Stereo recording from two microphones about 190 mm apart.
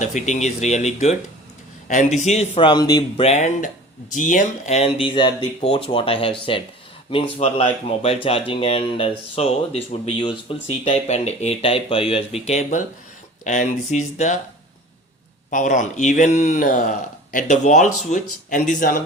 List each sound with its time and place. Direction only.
0.0 s speech: 40° left (ahead or behind); by 3.2 s 20° left (ahead or behind)
3.2 s speech: 40° left (ahead or behind)
15.4 s speech: 45° left (ahead or behind)